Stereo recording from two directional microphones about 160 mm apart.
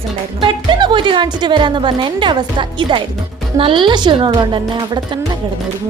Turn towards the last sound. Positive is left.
turn(degrees=-30)  # may be behind; listen again after turning